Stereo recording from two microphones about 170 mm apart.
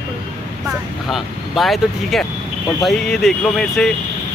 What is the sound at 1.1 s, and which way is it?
Speech, centre (ahead or behind).